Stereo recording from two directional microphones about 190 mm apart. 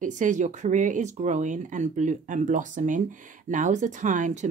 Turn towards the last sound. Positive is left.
turn(degrees=-40)  # may be behind; listen again after turning